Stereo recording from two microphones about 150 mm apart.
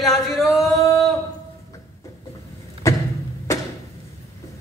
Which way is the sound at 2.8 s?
20° left (ahead or behind).